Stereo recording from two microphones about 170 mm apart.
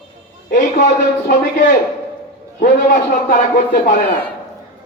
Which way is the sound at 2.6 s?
50° left (ahead or behind).